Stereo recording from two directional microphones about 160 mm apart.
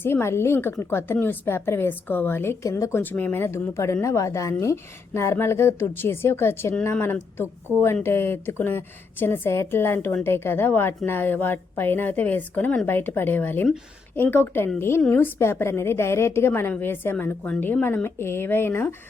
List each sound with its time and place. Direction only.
0.0 s speech: 15° left (ahead or behind)